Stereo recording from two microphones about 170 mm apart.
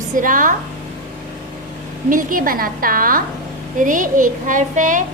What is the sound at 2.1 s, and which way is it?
A woman's voice, 55° right (ahead or behind).